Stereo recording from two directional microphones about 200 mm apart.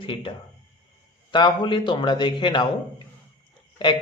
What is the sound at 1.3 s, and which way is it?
Speech, 20° left (ahead or behind).